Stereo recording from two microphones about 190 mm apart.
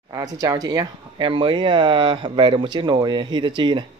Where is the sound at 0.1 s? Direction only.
20° right (ahead or behind).